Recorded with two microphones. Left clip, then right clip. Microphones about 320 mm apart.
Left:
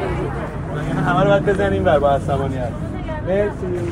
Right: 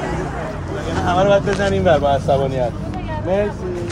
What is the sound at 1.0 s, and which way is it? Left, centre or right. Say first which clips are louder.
Speech: right 1 dB; right.